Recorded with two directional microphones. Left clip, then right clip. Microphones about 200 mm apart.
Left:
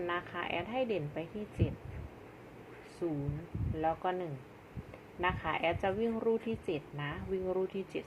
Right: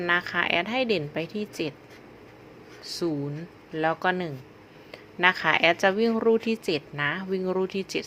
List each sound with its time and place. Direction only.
0.0 s speech: 40° right (ahead or behind)
3.8 s speech: 50° right (ahead or behind)